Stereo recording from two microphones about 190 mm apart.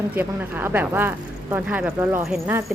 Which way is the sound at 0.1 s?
10° right (ahead or behind).